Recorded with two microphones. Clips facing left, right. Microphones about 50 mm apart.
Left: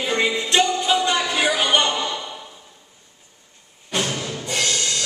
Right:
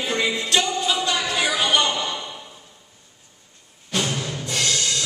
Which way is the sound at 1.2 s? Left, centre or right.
Centre.